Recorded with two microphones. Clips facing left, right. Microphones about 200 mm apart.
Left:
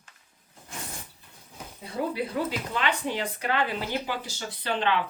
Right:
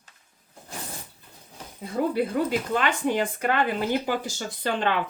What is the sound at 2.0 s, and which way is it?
Speech, 50° right (ahead or behind).